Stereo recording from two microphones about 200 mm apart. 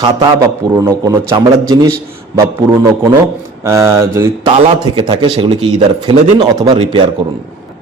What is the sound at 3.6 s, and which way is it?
Speech, 15° right (ahead or behind).